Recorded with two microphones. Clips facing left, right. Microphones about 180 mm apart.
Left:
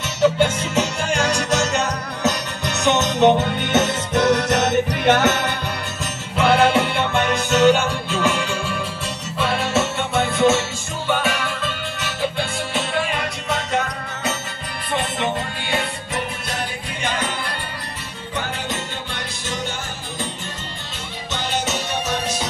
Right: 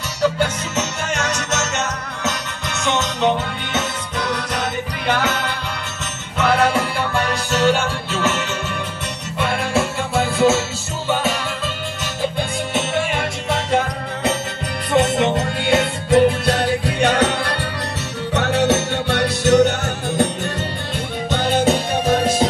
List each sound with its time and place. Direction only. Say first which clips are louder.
0.2 s music: left 2 dB; 25° left (ahead or behind)
2.8 s music: left 4 dB; 20° left (ahead or behind)
9.5 s music: right 1 dB; 25° left (ahead or behind)
12.4 s music: right 2 dB; 20° right (ahead or behind)
14.9 s music: right 7 dB; 75° right (ahead or behind)
21.3 s music: right 8 dB; 55° right (ahead or behind)